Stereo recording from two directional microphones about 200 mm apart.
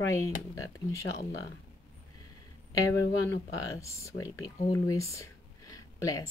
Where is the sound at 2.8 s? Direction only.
15° left (ahead or behind).